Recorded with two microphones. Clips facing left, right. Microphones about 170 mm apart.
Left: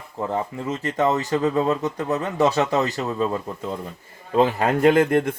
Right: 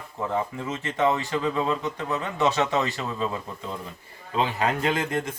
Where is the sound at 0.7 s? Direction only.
40° left (ahead or behind).